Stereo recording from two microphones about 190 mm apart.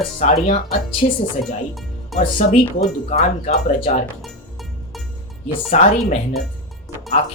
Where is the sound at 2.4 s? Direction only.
40° left (ahead or behind).